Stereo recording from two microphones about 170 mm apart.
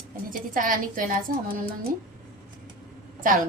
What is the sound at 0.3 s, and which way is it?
Speech, 55° right (ahead or behind).